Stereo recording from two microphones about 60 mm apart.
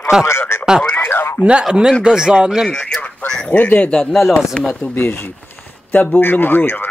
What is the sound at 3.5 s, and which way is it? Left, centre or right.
Speech, left.